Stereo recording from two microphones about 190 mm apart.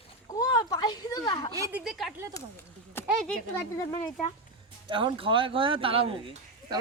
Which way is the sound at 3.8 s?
15° left (ahead or behind).